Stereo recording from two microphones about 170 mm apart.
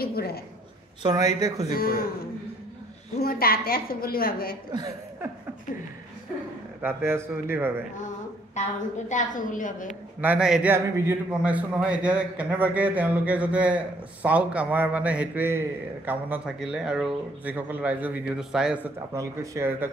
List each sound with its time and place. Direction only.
0.0 s a sound: 65° left (ahead or behind)
1.0 s speech: 20° right (ahead or behind)
1.7 s a woman's voice: 60° left (ahead or behind)
3.2 s a woman's voice: 60° left (ahead or behind)
4.7 s speech: 20° right (ahead or behind)
6.8 s a man's voice: 15° right (ahead or behind)
8.6 s a woman's voice: 45° left (ahead or behind)
10.2 s a man's voice: 5° right (ahead or behind)
19.1 s a man's voice: 20° right (ahead or behind)